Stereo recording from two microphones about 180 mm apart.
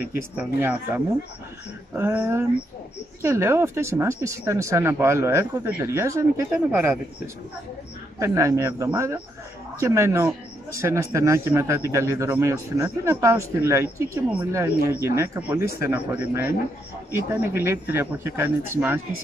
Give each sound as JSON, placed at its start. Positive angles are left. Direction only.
{"t": 0.0, "sound": "a man's voice", "side_deg": -10}
{"t": 8.2, "sound": "a man's voice", "side_deg": -15}